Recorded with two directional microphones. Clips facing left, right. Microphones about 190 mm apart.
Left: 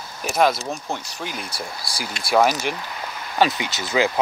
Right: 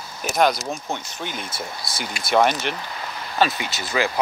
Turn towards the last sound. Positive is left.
turn(degrees=20)  # may be behind; listen again after turning